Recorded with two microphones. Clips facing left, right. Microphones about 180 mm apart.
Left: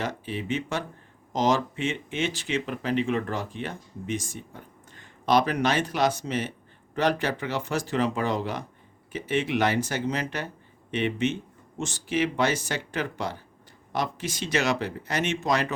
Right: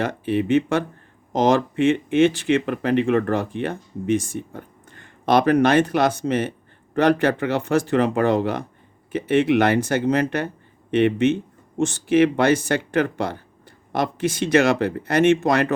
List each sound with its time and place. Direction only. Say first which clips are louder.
0.0 s speech: right 9 dB; 60° right (ahead or behind)